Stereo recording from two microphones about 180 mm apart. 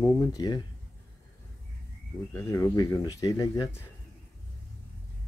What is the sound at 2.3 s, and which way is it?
Speech, 20° left (ahead or behind).